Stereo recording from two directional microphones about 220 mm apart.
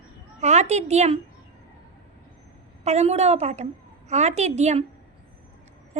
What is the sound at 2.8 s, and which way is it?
A woman's voice, 30° right (ahead or behind).